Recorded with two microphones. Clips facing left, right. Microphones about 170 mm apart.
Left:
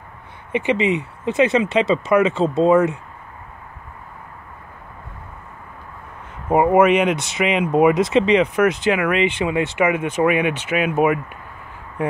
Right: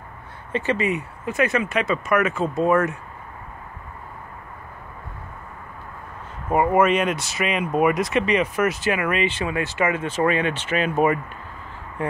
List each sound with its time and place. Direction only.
0.5 s speech: 15° left (ahead or behind)
6.5 s speech: 15° left (ahead or behind)
12.0 s a sound: 15° left (ahead or behind)